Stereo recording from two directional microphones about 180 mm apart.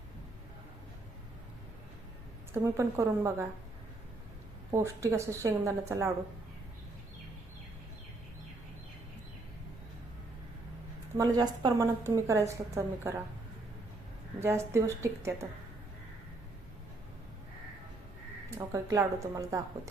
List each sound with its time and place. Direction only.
2.5 s a woman's voice: 15° right (ahead or behind)
4.7 s a woman's voice: 15° right (ahead or behind)
11.2 s a woman's voice: 20° right (ahead or behind)
14.4 s a woman's voice: 15° right (ahead or behind)
18.5 s a woman's voice: 20° right (ahead or behind)